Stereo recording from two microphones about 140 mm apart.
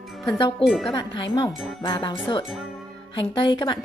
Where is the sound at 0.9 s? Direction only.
30° left (ahead or behind).